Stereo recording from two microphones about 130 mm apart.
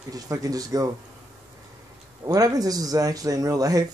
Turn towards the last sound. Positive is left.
turn(degrees=-25)  # may be behind; listen again after turning